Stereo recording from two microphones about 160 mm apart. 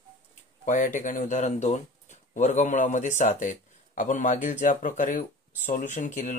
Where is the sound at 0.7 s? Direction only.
55° left (ahead or behind).